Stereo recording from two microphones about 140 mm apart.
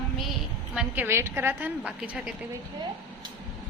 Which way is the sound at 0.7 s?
5° right (ahead or behind).